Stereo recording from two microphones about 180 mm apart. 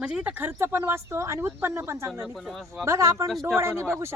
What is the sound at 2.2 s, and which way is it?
Speech, centre (ahead or behind).